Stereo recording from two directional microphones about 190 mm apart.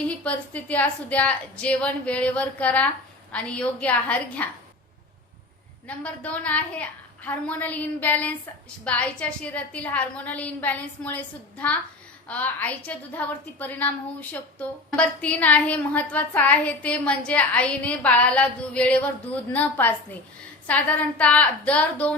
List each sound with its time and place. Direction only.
0.3 s a woman's voice: 10° left (ahead or behind)
6.0 s a woman's voice: 5° left (ahead or behind)